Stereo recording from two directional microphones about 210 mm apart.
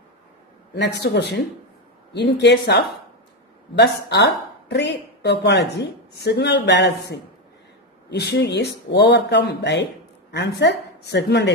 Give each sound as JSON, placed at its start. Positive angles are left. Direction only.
{"t": 0.7, "sound": "a woman's voice", "side_deg": 50}